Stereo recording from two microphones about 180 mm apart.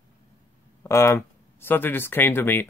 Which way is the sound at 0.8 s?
15° left (ahead or behind).